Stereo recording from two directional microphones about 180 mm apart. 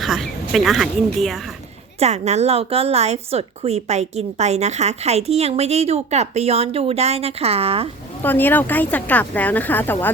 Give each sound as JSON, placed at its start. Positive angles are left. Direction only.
{"t": 0.0, "sound": "speech", "side_deg": 0}
{"t": 2.0, "sound": "a woman's voice", "side_deg": -35}
{"t": 8.2, "sound": "speech", "side_deg": 10}